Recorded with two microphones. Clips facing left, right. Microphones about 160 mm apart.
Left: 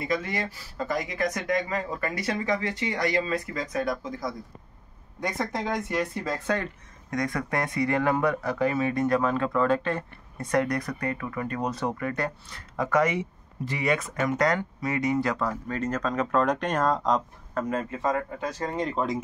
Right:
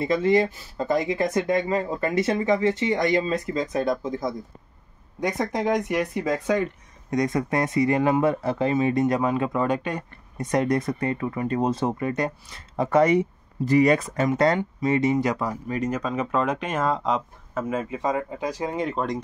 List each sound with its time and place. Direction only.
0.0 s speech: 25° right (ahead or behind)
7.1 s speech: 20° right (ahead or behind); by 19.2 s centre (ahead or behind)